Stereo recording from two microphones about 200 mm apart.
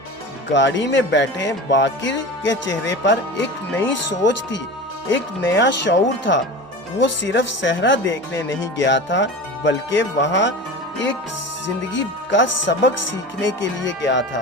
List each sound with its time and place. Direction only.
0.5 s speech: 65° left (ahead or behind)
11.9 s speech: 65° left (ahead or behind)